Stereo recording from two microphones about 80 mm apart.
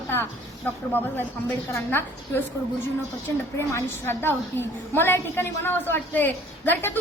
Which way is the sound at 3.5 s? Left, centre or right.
Left.